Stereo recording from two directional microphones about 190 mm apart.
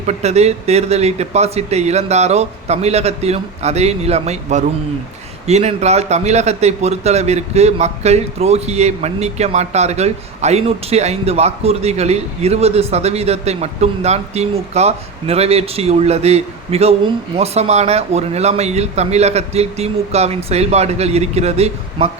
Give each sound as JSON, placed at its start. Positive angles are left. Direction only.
{"t": 0.0, "sound": "a man's voice", "side_deg": -35}